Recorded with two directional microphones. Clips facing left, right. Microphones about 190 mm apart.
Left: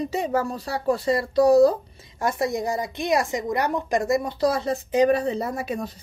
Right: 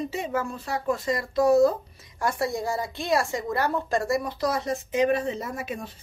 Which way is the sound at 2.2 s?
20° left (ahead or behind).